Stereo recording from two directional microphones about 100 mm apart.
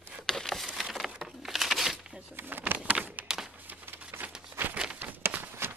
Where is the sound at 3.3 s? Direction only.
5° right (ahead or behind).